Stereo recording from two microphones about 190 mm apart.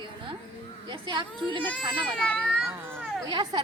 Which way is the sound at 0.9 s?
25° right (ahead or behind).